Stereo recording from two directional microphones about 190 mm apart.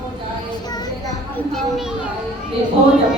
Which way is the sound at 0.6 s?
20° left (ahead or behind).